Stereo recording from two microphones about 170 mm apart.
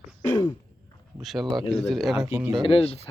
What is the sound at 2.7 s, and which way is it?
Speech, 35° left (ahead or behind).